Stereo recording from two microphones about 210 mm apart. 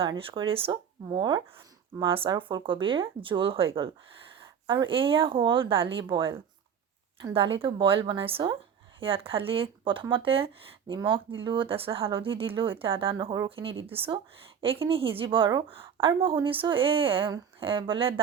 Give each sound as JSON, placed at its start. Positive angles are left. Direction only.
{"t": 0.0, "sound": "speech", "side_deg": -25}